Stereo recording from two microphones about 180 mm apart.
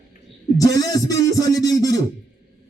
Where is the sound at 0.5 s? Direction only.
20° left (ahead or behind).